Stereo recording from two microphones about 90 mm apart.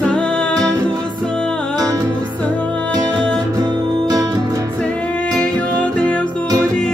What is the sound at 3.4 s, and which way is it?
Music, 45° right (ahead or behind).